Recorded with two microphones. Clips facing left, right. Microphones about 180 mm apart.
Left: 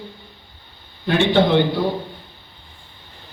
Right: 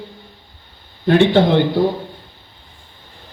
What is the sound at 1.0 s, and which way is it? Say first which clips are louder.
Speech: right 4 dB; 40° right (ahead or behind).